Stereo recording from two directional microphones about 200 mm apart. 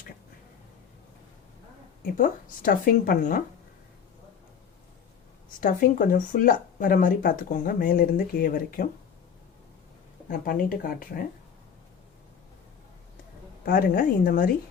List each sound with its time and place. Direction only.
2.1 s speech: 45° left (ahead or behind)
5.5 s speech: 40° left (ahead or behind)
10.2 s speech: 45° left (ahead or behind)
13.7 s speech: 45° left (ahead or behind)